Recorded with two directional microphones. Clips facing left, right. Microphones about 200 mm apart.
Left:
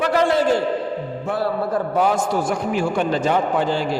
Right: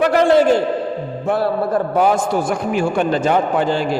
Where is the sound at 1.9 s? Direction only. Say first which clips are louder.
Right 3 dB; 55° right (ahead or behind).